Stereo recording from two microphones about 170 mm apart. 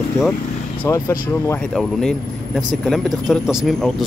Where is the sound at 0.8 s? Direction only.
15° left (ahead or behind).